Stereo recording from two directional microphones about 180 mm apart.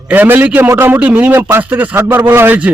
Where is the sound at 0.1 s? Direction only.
10° right (ahead or behind).